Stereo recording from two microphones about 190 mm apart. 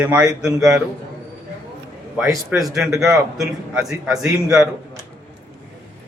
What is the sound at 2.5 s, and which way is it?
A man's voice, 10° right (ahead or behind).